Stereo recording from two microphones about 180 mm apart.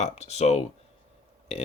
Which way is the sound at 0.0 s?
35° left (ahead or behind).